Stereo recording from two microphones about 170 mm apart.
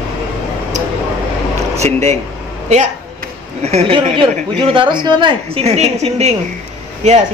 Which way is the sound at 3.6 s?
40° right (ahead or behind).